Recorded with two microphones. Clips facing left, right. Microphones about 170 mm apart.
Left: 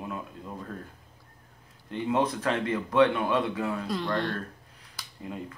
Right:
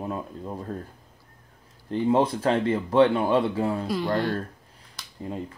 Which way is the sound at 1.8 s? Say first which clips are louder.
Right 5 dB; 35° right (ahead or behind).